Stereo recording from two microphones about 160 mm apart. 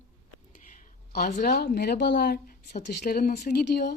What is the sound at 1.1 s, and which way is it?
Speech, 70° left (ahead or behind).